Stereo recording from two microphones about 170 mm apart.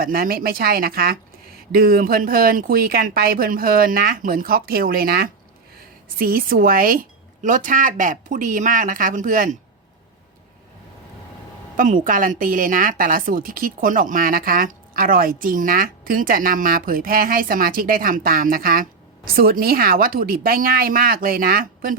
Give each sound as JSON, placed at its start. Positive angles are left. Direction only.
{"t": 0.0, "sound": "a woman's voice", "side_deg": -60}
{"t": 12.0, "sound": "a woman's voice", "side_deg": -50}